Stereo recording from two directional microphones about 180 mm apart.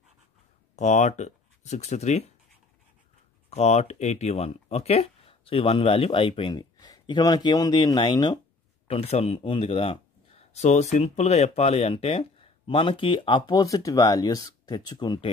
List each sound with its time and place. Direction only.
0.7 s speech: 40° left (ahead or behind)
3.4 s speech: 35° left (ahead or behind)